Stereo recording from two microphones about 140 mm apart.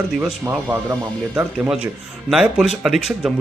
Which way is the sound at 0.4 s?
15° right (ahead or behind).